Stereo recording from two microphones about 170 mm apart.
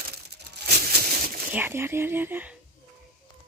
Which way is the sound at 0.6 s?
65° right (ahead or behind).